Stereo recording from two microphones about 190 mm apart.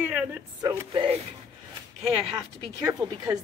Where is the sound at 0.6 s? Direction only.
25° right (ahead or behind).